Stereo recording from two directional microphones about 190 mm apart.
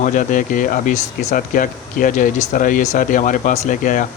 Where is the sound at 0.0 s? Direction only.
45° left (ahead or behind).